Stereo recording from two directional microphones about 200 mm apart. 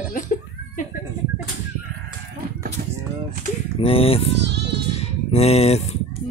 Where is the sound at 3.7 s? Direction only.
30° left (ahead or behind).